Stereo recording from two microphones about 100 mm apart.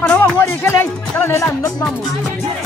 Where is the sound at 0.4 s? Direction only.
20° left (ahead or behind).